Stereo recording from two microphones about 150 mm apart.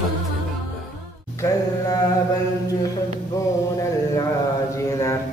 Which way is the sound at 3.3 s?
20° left (ahead or behind).